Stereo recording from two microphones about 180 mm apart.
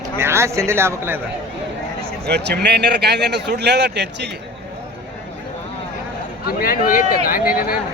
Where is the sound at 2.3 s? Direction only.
65° right (ahead or behind).